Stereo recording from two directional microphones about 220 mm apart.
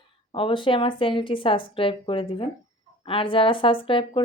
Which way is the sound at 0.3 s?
25° left (ahead or behind).